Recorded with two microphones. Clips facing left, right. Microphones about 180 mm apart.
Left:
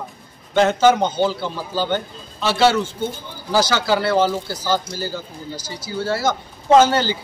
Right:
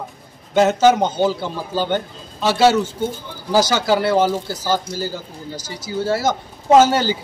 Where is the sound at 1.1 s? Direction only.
15° right (ahead or behind).